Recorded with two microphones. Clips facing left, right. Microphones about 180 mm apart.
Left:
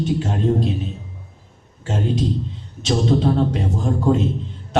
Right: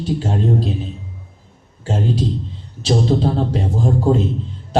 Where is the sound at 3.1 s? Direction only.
30° right (ahead or behind).